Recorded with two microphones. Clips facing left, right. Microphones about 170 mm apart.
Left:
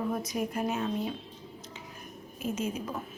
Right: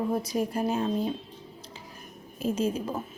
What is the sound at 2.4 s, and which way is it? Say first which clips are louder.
Speech: right 5 dB; 30° right (ahead or behind).